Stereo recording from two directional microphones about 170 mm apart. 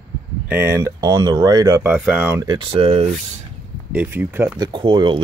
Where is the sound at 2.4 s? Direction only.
25° right (ahead or behind).